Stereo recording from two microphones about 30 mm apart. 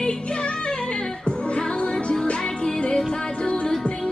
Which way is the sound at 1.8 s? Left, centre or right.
Left.